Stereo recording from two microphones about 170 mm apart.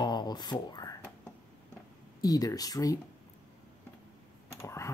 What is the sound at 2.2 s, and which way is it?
Speech, 20° left (ahead or behind).